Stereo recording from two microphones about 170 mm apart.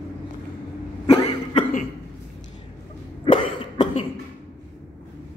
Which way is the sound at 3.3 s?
30° left (ahead or behind).